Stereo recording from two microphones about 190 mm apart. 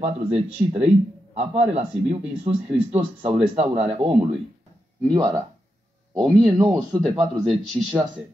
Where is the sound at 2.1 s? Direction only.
30° right (ahead or behind).